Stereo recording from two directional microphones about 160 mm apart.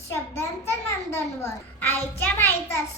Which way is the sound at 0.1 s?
15° left (ahead or behind).